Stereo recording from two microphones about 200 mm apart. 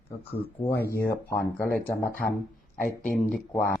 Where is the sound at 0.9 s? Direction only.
15° left (ahead or behind).